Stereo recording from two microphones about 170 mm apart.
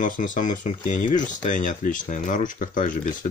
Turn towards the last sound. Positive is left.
turn(degrees=50)  # may be behind; listen again after turning